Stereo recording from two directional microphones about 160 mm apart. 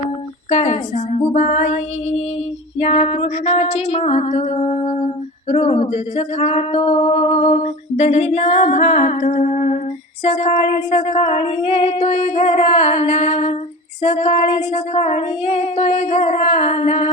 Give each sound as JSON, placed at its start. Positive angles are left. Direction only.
{"t": 0.5, "sound": "speech", "side_deg": 45}
{"t": 2.7, "sound": "music", "side_deg": 40}
{"t": 5.5, "sound": "speech", "side_deg": 40}